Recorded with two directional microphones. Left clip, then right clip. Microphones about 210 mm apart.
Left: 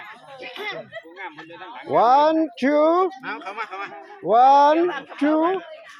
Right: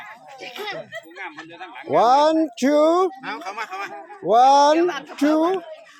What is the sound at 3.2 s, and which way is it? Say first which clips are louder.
Speech: right 1 dB; 55° right (ahead or behind).